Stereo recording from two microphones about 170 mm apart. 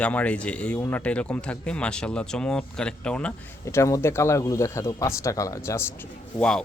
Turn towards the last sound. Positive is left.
turn(degrees=5)  # may be behind; listen again after turning